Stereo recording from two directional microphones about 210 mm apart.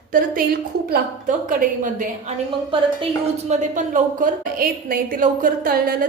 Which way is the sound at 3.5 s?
35° right (ahead or behind).